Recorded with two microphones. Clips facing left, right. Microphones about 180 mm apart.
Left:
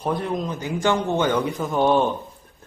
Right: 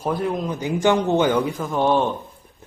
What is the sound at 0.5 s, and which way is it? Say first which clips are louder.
A man's voice: right 4 dB; 15° right (ahead or behind).